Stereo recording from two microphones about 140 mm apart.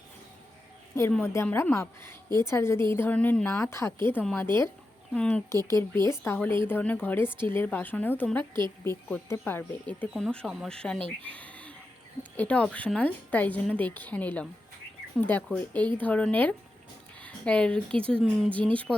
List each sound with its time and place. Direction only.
1.2 s a woman's voice: 20° left (ahead or behind)
5.7 s a woman's voice: 20° left (ahead or behind)
10.2 s speech: centre (ahead or behind)
11.3 s a sound: 10° left (ahead or behind)
12.4 s a woman's voice: 10° left (ahead or behind)